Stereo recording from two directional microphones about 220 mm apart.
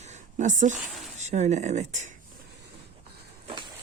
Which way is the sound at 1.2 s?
30° right (ahead or behind).